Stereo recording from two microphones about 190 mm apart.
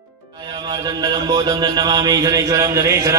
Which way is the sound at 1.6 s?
20° right (ahead or behind).